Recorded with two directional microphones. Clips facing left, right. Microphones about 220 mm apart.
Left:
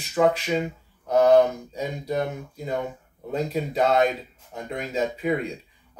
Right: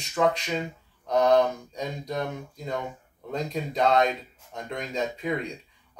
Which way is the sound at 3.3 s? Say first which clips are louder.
Left 3 dB; 5° left (ahead or behind).